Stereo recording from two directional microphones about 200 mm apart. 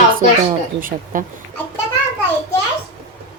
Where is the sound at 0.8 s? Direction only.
40° right (ahead or behind).